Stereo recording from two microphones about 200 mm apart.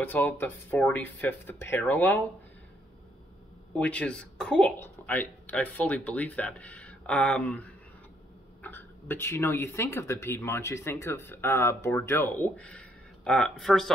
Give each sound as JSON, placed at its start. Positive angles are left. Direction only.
{"t": 0.0, "sound": "speech", "side_deg": 10}
{"t": 3.7, "sound": "speech", "side_deg": 5}